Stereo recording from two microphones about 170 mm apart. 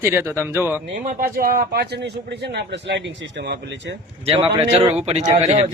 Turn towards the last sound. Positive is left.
turn(degrees=-40)  # may be behind; listen again after turning